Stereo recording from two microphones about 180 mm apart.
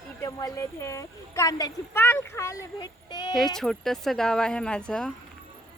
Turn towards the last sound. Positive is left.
turn(degrees=5)  # may be behind; listen again after turning